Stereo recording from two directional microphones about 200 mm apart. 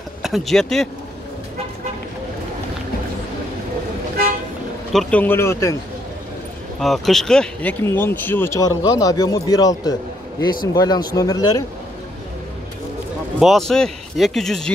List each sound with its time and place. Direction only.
0.2 s speech: centre (ahead or behind)
4.9 s speech: 10° left (ahead or behind)
6.8 s speech: centre (ahead or behind); by 11.6 s 20° left (ahead or behind)
13.4 s speech: centre (ahead or behind)